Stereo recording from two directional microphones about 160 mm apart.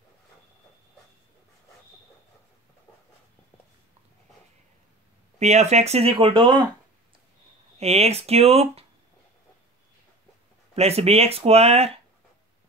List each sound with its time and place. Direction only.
5.4 s speech: 45° right (ahead or behind)
7.8 s speech: 40° right (ahead or behind)
10.7 s speech: 40° right (ahead or behind)